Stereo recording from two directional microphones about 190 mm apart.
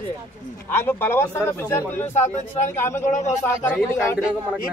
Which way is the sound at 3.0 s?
40° left (ahead or behind).